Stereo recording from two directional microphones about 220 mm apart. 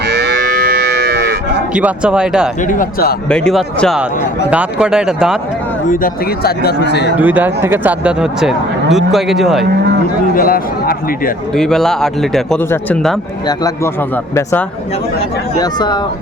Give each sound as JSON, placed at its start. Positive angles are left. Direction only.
{"t": 0.1, "sound": "cattle", "side_deg": -50}
{"t": 1.7, "sound": "speech", "side_deg": -5}
{"t": 2.6, "sound": "speech", "side_deg": 40}
{"t": 3.2, "sound": "speech", "side_deg": 5}
{"t": 5.9, "sound": "a man's voice", "side_deg": 40}
{"t": 7.2, "sound": "speech", "side_deg": -10}
{"t": 10.3, "sound": "speech", "side_deg": 40}
{"t": 11.5, "sound": "speech", "side_deg": 0}
{"t": 15.5, "sound": "speech", "side_deg": 20}